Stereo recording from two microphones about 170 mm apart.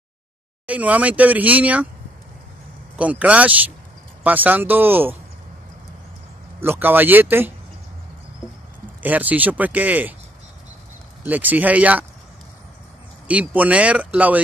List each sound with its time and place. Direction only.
0.7 s speech: 10° right (ahead or behind)
3.0 s speech: 10° right (ahead or behind)
6.6 s speech: 10° right (ahead or behind)
9.0 s speech: 10° right (ahead or behind)
11.2 s speech: 10° right (ahead or behind)
13.3 s speech: 10° right (ahead or behind)